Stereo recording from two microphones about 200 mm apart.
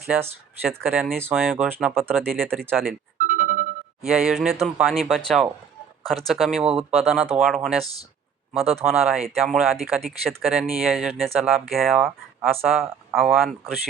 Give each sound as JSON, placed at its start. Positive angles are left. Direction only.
{"t": 0.2, "sound": "speech", "side_deg": -10}
{"t": 2.8, "sound": "music", "side_deg": -40}
{"t": 4.0, "sound": "speech", "side_deg": 0}